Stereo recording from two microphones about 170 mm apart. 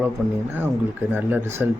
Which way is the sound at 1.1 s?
10° right (ahead or behind).